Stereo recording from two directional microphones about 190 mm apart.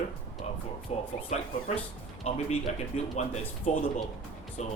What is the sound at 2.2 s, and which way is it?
Speech, 35° left (ahead or behind).